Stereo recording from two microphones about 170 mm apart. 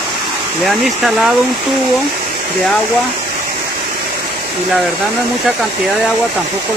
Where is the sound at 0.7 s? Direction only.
Centre (ahead or behind).